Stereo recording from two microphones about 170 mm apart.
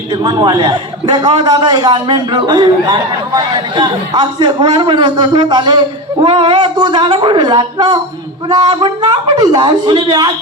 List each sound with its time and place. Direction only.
0.1 s a man's voice: 25° right (ahead or behind)